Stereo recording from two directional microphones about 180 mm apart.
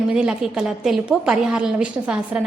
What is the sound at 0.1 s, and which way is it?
A woman's voice, 5° right (ahead or behind).